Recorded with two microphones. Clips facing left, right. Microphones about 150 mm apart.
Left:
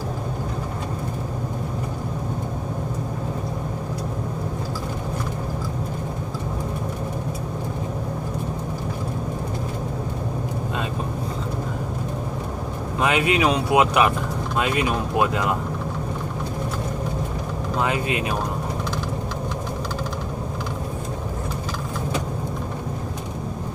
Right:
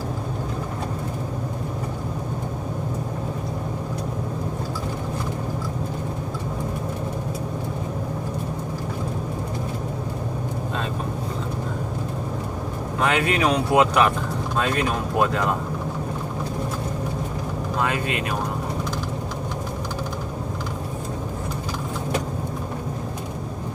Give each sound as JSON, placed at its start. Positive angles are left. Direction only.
{"t": 13.0, "sound": "speech", "side_deg": 15}
{"t": 17.7, "sound": "speech", "side_deg": 20}